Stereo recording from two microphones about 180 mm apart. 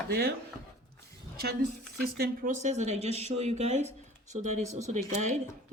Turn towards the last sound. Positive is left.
turn(degrees=-40)  # may be behind; listen again after turning